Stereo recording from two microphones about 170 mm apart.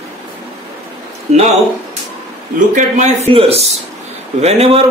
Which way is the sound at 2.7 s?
40° right (ahead or behind).